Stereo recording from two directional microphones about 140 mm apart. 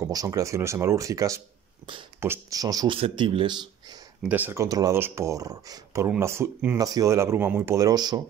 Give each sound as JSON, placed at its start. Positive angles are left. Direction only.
{"t": 0.0, "sound": "speech", "side_deg": -25}
{"t": 3.0, "sound": "speech", "side_deg": -40}
{"t": 4.3, "sound": "speech", "side_deg": -15}